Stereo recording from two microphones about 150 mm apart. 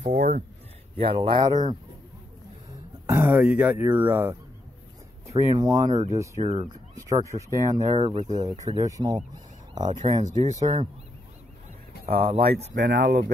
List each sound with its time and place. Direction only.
0.0 s a sound: 45° right (ahead or behind)
0.9 s speech: 35° right (ahead or behind)
3.1 s speech: 15° right (ahead or behind)
6.4 s speech: 45° right (ahead or behind)
6.7 s speech: 25° right (ahead or behind)
7.9 s speech: 40° right (ahead or behind)
8.6 s speech: 25° right (ahead or behind)
10.7 s speech: 45° right (ahead or behind)
12.1 s speech: 40° right (ahead or behind)
12.5 s speech: 60° right (ahead or behind)